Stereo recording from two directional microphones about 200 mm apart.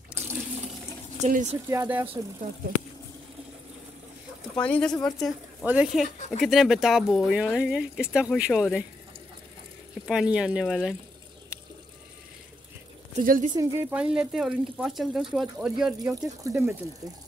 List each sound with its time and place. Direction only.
1.2 s speech: 35° right (ahead or behind)
1.7 s speech: 10° right (ahead or behind)
4.6 s speech: 5° left (ahead or behind)
6.1 s speech: 35° left (ahead or behind)
6.4 s speech: centre (ahead or behind)
10.0 s speech: 5° right (ahead or behind)
13.1 s speech: 40° right (ahead or behind)
13.6 s speech: 15° right (ahead or behind)
16.2 s speech: 15° right (ahead or behind)